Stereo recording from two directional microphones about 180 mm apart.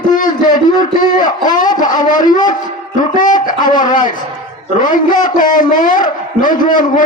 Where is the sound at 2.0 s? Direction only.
45° left (ahead or behind).